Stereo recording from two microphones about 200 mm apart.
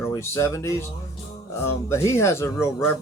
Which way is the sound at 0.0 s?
15° left (ahead or behind).